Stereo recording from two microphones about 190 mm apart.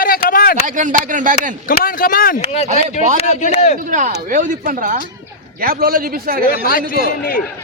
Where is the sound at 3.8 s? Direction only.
40° right (ahead or behind).